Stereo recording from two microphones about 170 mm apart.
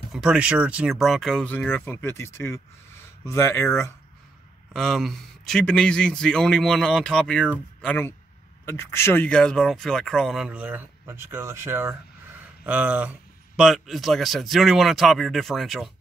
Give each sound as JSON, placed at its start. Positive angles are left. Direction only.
{"t": 0.1, "sound": "speech", "side_deg": -5}
{"t": 4.7, "sound": "speech", "side_deg": 0}